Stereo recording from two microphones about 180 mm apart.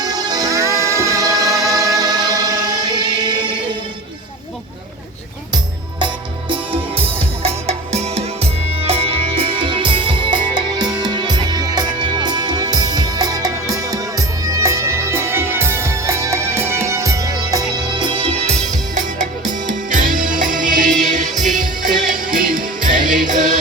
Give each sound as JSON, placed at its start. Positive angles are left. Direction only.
{"t": 0.0, "sound": "music", "side_deg": -20}
{"t": 6.5, "sound": "music", "side_deg": -30}